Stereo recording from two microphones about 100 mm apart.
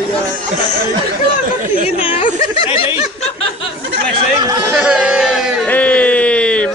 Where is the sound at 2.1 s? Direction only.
75° left (ahead or behind).